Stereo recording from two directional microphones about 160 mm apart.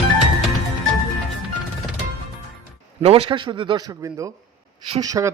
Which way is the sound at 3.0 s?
40° right (ahead or behind).